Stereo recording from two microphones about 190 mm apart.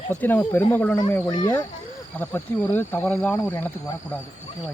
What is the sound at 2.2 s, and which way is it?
Speech, 10° left (ahead or behind).